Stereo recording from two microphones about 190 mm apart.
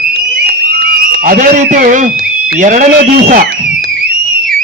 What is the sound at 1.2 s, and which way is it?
A man's voice, 45° right (ahead or behind).